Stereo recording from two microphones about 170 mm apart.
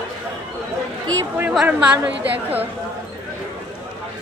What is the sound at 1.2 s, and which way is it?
A woman's voice, 10° right (ahead or behind).